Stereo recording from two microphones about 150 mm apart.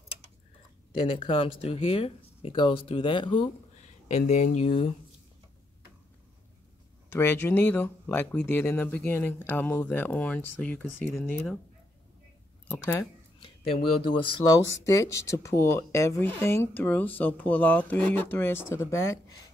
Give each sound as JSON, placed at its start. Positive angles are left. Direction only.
{"t": 1.0, "sound": "speech", "side_deg": 40}
{"t": 4.3, "sound": "speech", "side_deg": 50}
{"t": 7.1, "sound": "speech", "side_deg": 15}
{"t": 12.6, "sound": "speech", "side_deg": 15}
{"t": 14.1, "sound": "speech", "side_deg": 35}
{"t": 14.7, "sound": "speech", "side_deg": 20}